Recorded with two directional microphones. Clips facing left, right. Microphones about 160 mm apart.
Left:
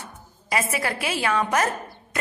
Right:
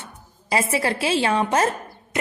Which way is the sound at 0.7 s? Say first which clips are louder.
Right 5 dB; 30° right (ahead or behind).